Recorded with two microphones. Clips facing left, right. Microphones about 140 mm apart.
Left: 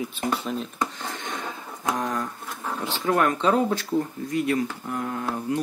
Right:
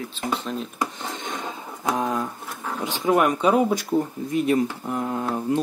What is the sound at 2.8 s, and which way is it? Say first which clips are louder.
Speech: right 3 dB; 15° right (ahead or behind).